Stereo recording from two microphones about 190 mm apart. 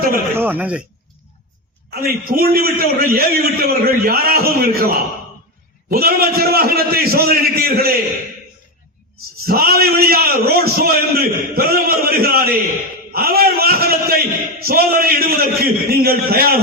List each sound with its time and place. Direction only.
0.3 s speech: 10° right (ahead or behind)
1.9 s a man's voice: 50° right (ahead or behind)
9.5 s a man's voice: 55° right (ahead or behind)